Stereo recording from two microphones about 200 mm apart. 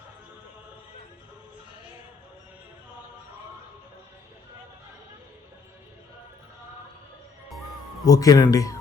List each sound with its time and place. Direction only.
8.0 s speech: 20° left (ahead or behind)